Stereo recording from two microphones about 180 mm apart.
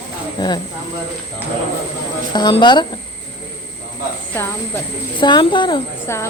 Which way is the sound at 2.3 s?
25° left (ahead or behind).